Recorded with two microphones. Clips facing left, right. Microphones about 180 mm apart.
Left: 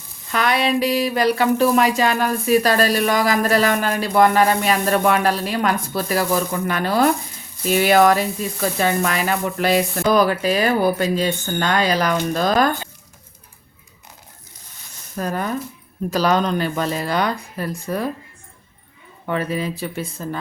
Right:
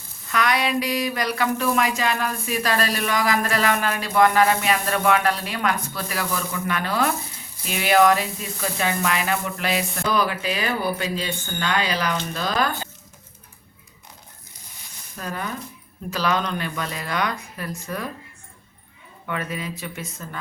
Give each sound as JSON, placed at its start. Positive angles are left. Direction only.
{"t": 0.3, "sound": "speech", "side_deg": 30}
{"t": 15.1, "sound": "speech", "side_deg": 45}
{"t": 19.2, "sound": "speech", "side_deg": 35}